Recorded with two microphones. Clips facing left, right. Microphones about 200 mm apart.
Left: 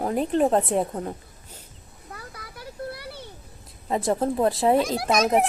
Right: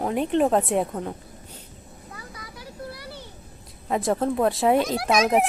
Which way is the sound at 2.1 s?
60° left (ahead or behind).